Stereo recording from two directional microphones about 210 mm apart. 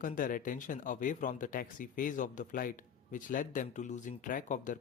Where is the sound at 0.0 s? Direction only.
40° left (ahead or behind).